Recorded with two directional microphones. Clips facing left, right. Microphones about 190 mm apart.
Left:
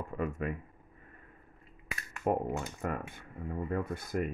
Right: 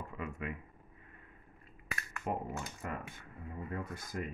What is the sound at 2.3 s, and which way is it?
Speech, 50° left (ahead or behind).